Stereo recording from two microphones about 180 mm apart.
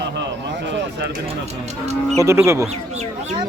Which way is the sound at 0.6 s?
80° right.